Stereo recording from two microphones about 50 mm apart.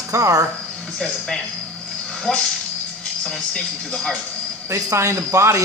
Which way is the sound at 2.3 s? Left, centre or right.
Centre.